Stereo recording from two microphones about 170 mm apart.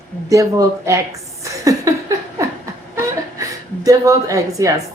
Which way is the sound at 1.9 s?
20° right (ahead or behind).